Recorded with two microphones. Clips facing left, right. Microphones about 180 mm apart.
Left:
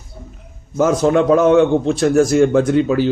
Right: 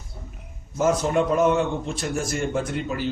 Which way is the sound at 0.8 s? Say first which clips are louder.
Left 7 dB; 90° left.